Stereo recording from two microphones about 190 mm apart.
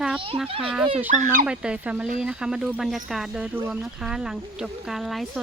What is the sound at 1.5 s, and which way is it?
Speech, 5° right (ahead or behind).